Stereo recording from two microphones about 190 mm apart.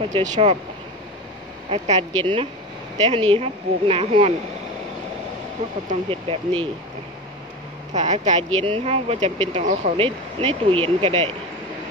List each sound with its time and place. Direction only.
0.1 s speech: 35° right (ahead or behind)
1.7 s speech: 30° right (ahead or behind)
6.0 s speech: 30° right (ahead or behind)
7.9 s speech: 35° right (ahead or behind)